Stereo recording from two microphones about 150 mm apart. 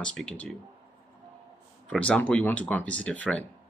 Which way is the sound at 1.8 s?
10° left (ahead or behind).